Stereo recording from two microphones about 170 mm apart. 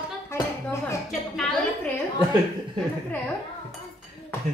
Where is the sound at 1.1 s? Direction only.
Centre (ahead or behind).